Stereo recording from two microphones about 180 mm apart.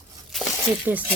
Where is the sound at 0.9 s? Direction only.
10° right (ahead or behind).